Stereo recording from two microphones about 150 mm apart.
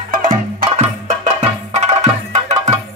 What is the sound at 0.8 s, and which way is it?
Music, 50° right (ahead or behind).